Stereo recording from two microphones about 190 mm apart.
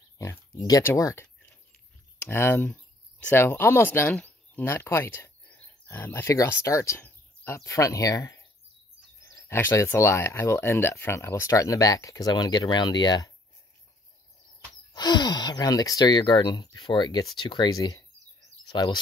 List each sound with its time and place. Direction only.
0.2 s oink: 15° left (ahead or behind)
2.1 s speech: 10° left (ahead or behind)
14.9 s speech: 20° left (ahead or behind)